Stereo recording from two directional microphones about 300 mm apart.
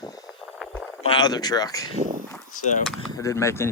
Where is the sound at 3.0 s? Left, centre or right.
Centre.